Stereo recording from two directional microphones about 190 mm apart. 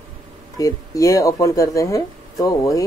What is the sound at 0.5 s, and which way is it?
A woman's voice, 20° left (ahead or behind).